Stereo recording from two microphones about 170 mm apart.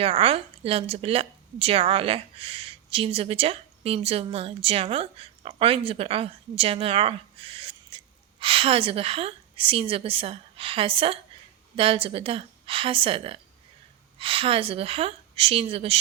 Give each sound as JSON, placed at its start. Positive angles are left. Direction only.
{"t": 0.0, "sound": "a woman's voice", "side_deg": -35}